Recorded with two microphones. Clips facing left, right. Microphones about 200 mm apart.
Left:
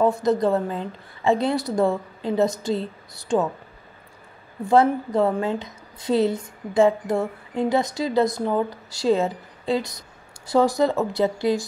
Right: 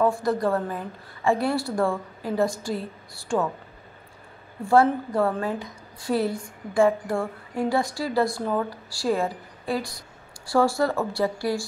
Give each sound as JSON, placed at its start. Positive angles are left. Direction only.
{"t": 0.0, "sound": "a woman's voice", "side_deg": 20}
{"t": 4.6, "sound": "a woman's voice", "side_deg": 20}